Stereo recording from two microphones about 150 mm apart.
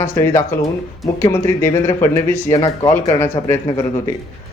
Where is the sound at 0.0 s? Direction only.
15° left (ahead or behind).